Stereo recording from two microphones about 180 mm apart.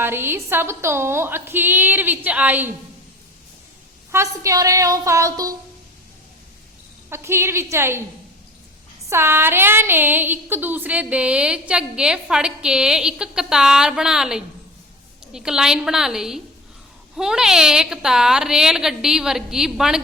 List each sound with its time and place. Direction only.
0.0 s a woman's voice: 10° right (ahead or behind)
4.1 s a woman's voice: 15° right (ahead or behind)
7.1 s a woman's voice: 15° right (ahead or behind)
9.0 s a woman's voice: 15° right (ahead or behind)